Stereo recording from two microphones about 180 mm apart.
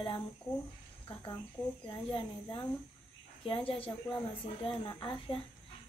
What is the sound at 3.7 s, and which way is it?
Speech, 30° left (ahead or behind).